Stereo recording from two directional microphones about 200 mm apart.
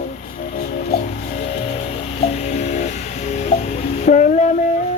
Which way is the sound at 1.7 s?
35° left (ahead or behind).